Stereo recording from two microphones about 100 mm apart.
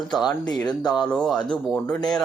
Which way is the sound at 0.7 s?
45° left (ahead or behind).